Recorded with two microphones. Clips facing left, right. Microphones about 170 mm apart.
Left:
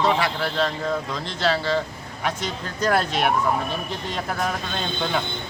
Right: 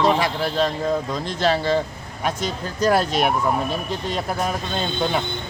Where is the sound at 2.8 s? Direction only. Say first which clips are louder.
Right 3 dB; 10° right (ahead or behind).